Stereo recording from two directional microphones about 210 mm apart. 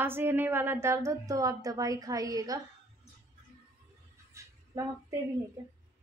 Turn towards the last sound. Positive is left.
turn(degrees=-15)  # may be behind; listen again after turning